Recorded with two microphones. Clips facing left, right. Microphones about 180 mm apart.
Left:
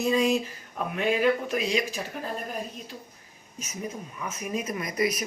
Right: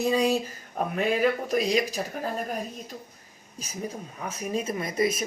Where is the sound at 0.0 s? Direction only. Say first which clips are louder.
Even; 35° right (ahead or behind).